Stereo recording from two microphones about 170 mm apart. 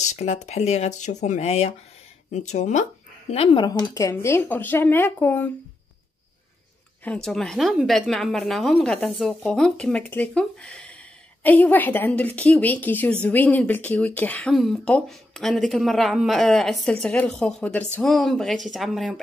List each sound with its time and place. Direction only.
0.0 s speech: 40° left (ahead or behind)
3.6 s a woman's voice: 20° left (ahead or behind)
7.1 s a woman's voice: 5° left (ahead or behind)